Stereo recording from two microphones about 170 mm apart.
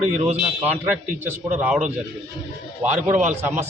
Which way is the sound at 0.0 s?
45° right (ahead or behind).